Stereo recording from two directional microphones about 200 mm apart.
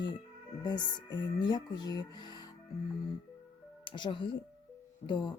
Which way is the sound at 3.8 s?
25° left (ahead or behind).